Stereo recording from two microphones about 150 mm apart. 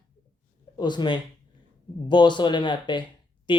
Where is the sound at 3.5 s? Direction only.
30° left (ahead or behind).